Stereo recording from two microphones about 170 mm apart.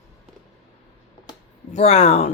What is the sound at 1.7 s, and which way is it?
Speech, 35° left (ahead or behind).